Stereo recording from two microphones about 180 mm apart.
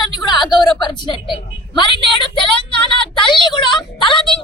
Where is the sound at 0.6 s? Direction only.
25° left (ahead or behind).